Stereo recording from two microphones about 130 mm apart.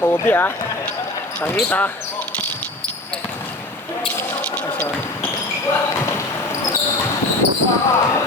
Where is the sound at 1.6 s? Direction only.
15° left (ahead or behind).